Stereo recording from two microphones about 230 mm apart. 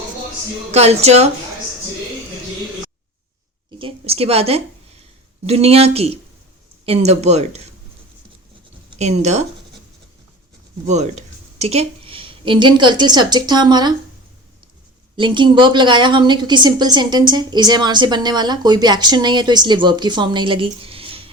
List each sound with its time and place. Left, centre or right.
0.7 s a woman's voice: right
3.7 s a woman's voice: right
8.9 s speech: right
10.8 s a woman's voice: right
15.1 s a woman's voice: right